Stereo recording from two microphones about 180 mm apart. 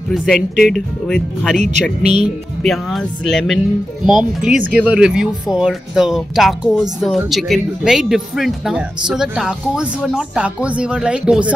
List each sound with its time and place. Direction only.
0.1 s speech: 5° left (ahead or behind)
1.6 s speech: 40° right (ahead or behind)
2.6 s speech: centre (ahead or behind)